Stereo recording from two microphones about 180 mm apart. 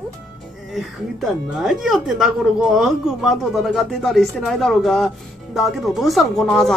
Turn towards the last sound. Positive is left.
turn(degrees=0)  # may be behind; listen again after turning